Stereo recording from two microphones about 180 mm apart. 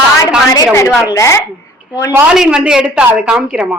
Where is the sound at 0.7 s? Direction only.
15° left (ahead or behind).